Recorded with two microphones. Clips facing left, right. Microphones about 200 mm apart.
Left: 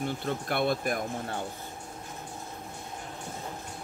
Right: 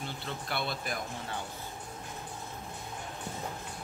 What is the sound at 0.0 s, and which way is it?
Speech, 50° left (ahead or behind).